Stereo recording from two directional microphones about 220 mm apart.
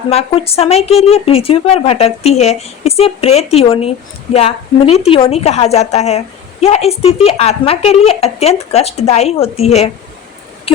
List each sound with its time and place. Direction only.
0.1 s a woman's voice: 25° left (ahead or behind)